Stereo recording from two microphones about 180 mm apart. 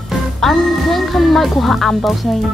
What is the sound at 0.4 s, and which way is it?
Speech, centre (ahead or behind).